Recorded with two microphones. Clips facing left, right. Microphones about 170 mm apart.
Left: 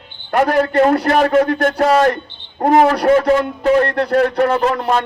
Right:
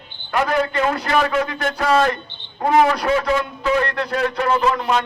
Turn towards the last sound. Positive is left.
turn(degrees=55)  # may be behind; listen again after turning